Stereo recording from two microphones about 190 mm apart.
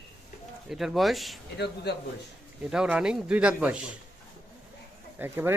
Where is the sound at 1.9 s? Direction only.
60° left (ahead or behind).